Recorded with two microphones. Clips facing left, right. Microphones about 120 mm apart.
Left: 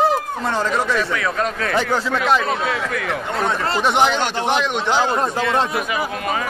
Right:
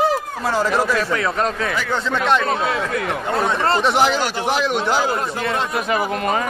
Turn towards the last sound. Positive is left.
turn(degrees=-5)  # may be behind; listen again after turning